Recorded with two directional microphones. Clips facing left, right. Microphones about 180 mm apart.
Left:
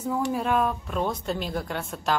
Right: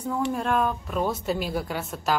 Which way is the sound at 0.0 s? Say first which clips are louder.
Even; 5° left (ahead or behind).